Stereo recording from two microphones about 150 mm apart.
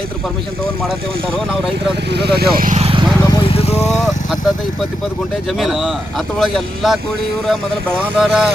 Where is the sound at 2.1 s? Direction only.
90° right.